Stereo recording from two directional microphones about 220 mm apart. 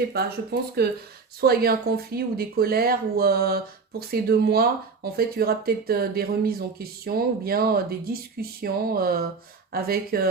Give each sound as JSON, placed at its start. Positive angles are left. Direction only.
{"t": 0.1, "sound": "speech", "side_deg": -45}